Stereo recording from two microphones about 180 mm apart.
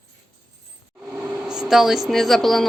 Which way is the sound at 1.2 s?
5° right (ahead or behind).